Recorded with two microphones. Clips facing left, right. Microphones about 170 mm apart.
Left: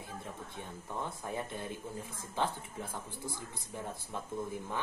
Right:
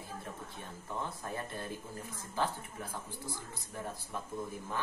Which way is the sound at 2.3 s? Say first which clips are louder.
Even; 20° left (ahead or behind).